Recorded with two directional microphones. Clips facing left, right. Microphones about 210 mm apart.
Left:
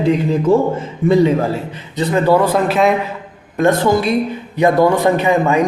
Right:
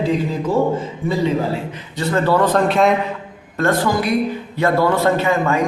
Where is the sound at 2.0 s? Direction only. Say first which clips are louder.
Left 3 dB; 15° left (ahead or behind).